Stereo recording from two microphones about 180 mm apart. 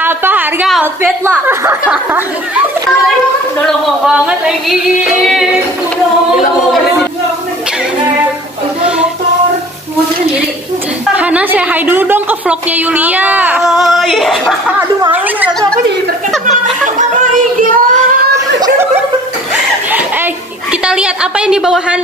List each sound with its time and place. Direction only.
0.0 s a sound: 10° right (ahead or behind)
0.7 s a woman's voice: centre (ahead or behind)
1.2 s a woman's voice: 15° right (ahead or behind)
3.6 s speech: 5° right (ahead or behind)
11.1 s a woman's voice: 10° right (ahead or behind)
14.8 s a woman's voice: 10° right (ahead or behind)
17.2 s child singing: 45° right (ahead or behind)
19.9 s cough: 10° right (ahead or behind)
20.8 s a woman's voice: 5° right (ahead or behind)